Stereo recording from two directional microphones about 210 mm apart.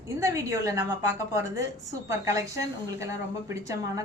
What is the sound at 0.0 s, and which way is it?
A woman's voice, 15° right (ahead or behind).